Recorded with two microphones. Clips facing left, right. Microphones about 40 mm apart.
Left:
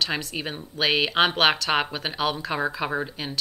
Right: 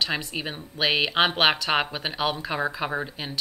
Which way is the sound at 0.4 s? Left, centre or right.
Centre.